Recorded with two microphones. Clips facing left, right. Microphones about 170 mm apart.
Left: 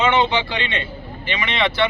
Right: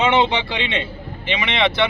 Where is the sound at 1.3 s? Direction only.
20° right (ahead or behind).